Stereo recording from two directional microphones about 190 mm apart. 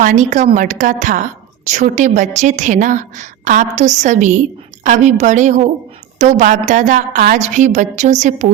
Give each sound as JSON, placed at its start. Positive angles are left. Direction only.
{"t": 0.0, "sound": "a woman's voice", "side_deg": -40}